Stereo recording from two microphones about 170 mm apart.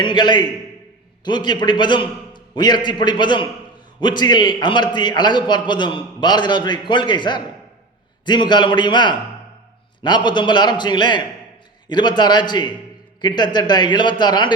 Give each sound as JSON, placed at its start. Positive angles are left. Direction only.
{"t": 0.0, "sound": "a man's voice", "side_deg": 25}